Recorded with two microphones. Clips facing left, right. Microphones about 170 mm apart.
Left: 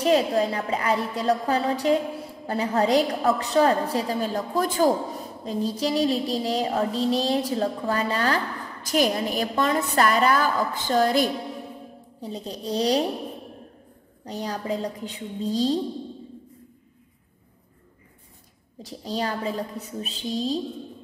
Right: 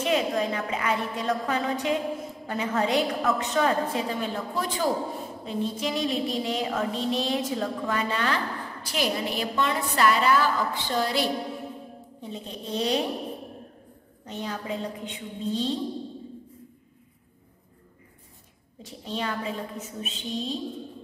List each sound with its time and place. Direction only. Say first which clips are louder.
0.0 s a woman's voice: left 4 dB; 35° left (ahead or behind)
14.2 s a woman's voice: left 3 dB; 35° left (ahead or behind)
18.8 s a woman's voice: left 4 dB; 35° left (ahead or behind)